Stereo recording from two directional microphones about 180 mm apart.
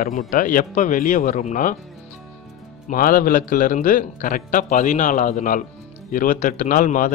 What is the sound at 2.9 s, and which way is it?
Speech, 50° left (ahead or behind).